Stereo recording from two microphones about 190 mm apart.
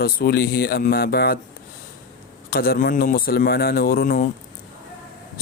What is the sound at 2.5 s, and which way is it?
Speech, 50° left (ahead or behind).